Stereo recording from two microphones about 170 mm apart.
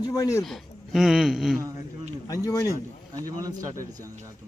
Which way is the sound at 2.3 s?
20° left (ahead or behind).